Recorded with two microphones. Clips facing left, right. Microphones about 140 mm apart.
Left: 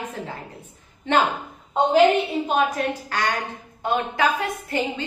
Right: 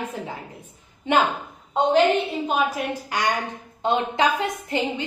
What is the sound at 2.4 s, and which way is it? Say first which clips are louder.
Speech: left 1 dB; 5° right (ahead or behind).